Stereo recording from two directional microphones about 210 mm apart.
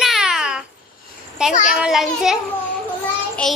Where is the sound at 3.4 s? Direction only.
5° left (ahead or behind).